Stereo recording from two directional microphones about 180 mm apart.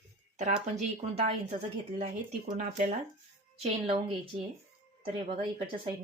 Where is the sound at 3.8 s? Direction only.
30° right (ahead or behind).